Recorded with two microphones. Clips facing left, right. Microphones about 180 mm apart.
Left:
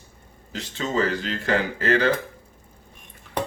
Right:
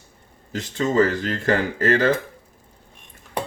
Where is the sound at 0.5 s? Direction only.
50° right (ahead or behind).